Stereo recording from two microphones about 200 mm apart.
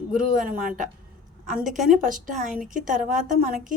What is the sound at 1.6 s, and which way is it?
A woman's voice, 40° right (ahead or behind).